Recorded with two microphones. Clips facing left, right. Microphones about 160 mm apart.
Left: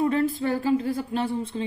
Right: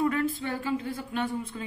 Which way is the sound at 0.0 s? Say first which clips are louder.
Left 4 dB; 30° left (ahead or behind).